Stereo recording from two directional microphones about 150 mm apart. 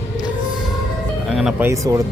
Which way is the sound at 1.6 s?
20° right (ahead or behind).